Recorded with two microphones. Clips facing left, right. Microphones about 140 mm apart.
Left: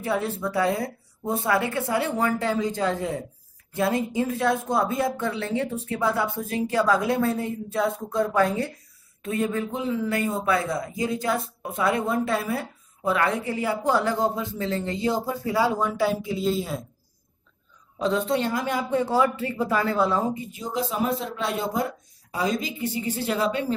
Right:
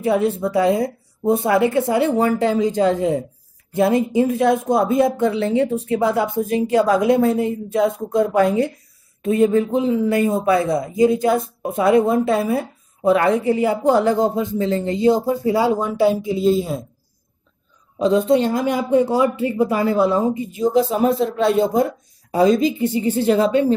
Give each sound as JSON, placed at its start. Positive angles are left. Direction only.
{"t": 0.0, "sound": "a woman's voice", "side_deg": -20}
{"t": 17.9, "sound": "speech", "side_deg": -15}
{"t": 20.7, "sound": "a man's voice", "side_deg": -35}